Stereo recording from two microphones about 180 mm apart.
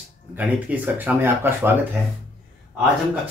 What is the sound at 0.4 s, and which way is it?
Speech, 10° right (ahead or behind).